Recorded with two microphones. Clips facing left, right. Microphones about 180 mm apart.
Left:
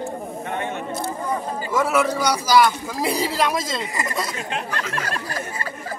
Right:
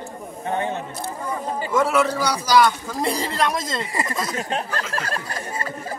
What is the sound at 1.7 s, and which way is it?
Speech, 5° left (ahead or behind).